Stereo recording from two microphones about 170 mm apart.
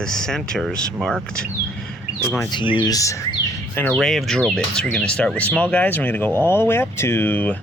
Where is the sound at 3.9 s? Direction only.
Centre (ahead or behind).